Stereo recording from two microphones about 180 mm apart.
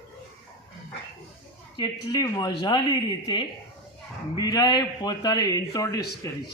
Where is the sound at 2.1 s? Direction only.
20° left (ahead or behind).